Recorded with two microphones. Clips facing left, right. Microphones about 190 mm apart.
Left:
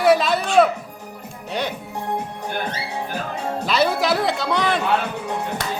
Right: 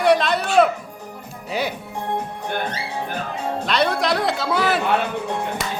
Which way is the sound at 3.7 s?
5° left (ahead or behind).